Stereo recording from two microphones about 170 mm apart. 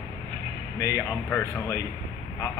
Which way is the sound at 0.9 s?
15° left (ahead or behind).